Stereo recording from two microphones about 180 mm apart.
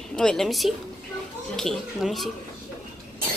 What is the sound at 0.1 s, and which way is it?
Speech, 5° left (ahead or behind).